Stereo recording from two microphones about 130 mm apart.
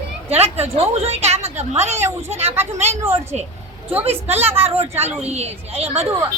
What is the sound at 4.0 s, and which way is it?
A woman's voice, 50° right (ahead or behind).